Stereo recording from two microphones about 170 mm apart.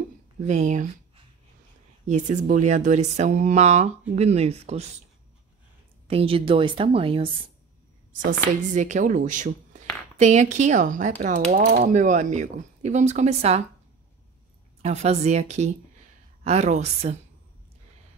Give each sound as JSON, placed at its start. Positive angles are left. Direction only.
{"t": 0.5, "sound": "speech", "side_deg": -45}
{"t": 2.0, "sound": "a woman's voice", "side_deg": -45}
{"t": 6.0, "sound": "a woman's voice", "side_deg": -35}
{"t": 8.1, "sound": "speech", "side_deg": -50}
{"t": 14.8, "sound": "a woman's voice", "side_deg": -40}